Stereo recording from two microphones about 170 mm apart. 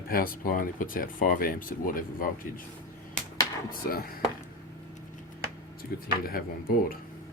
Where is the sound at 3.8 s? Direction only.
60° left (ahead or behind).